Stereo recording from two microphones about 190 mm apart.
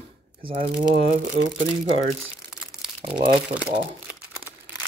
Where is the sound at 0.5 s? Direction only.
50° right (ahead or behind).